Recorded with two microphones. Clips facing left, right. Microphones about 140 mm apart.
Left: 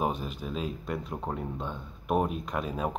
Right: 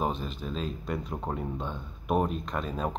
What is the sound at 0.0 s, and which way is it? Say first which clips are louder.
A man's voice: even; 10° left (ahead or behind).